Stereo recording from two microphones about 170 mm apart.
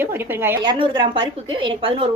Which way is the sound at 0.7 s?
30° right (ahead or behind).